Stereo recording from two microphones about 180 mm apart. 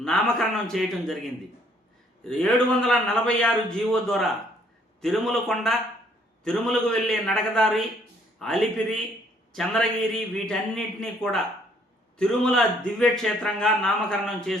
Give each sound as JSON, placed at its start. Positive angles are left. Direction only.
{"t": 0.0, "sound": "a man's voice", "side_deg": 0}